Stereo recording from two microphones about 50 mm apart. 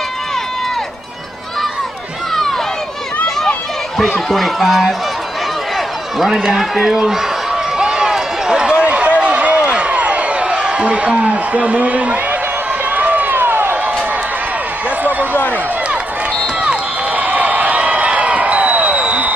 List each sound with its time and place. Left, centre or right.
4.0 s a man's voice: centre
6.1 s a man's voice: centre
7.7 s run: centre
9.7 s a sound: right
12.9 s run: right
16.6 s a sound: right